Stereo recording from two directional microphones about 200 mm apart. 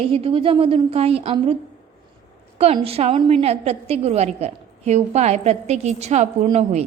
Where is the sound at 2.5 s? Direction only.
30° right (ahead or behind).